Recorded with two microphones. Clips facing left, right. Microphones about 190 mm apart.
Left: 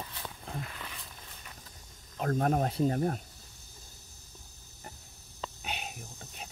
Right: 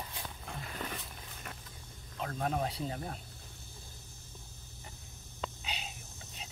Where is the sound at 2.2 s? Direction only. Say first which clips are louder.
Left 6 dB; 50° left (ahead or behind).